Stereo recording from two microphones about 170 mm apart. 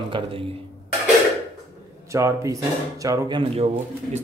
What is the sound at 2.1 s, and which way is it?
Speech, 20° right (ahead or behind).